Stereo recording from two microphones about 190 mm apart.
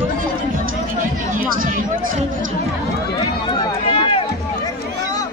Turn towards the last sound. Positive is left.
turn(degrees=30)  # may be behind; listen again after turning